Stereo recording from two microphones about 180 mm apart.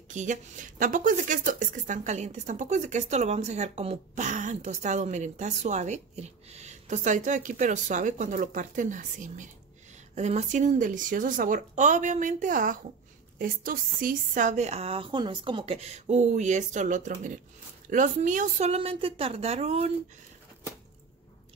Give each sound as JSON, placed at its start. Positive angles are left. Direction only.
{"t": 0.1, "sound": "a woman's voice", "side_deg": -40}